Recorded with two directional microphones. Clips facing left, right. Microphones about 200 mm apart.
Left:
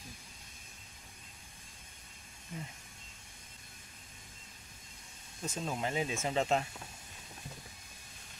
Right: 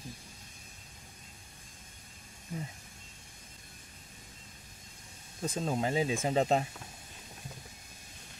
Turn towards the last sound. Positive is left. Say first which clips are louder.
# right 4 dB
turn(degrees=-35)  # may be behind; listen again after turning